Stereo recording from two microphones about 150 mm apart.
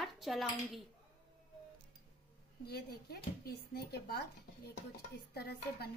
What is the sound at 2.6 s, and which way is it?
Speech, 90° left.